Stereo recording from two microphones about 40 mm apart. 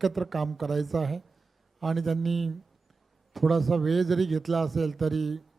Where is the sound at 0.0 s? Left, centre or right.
Centre.